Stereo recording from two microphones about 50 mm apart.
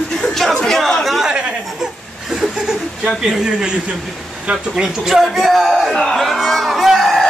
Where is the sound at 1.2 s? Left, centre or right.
Centre.